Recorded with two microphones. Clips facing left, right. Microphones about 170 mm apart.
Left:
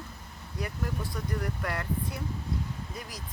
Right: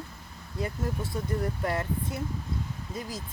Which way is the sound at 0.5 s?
25° right (ahead or behind).